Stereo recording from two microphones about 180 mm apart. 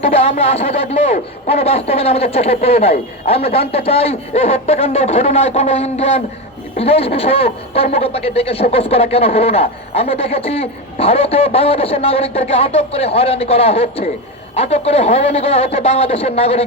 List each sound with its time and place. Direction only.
0.0 s a man's voice: 35° left (ahead or behind)